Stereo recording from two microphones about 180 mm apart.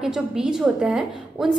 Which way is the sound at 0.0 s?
5° right (ahead or behind).